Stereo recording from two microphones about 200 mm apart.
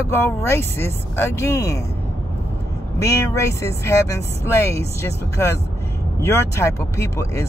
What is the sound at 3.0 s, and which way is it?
Speech, 15° left (ahead or behind).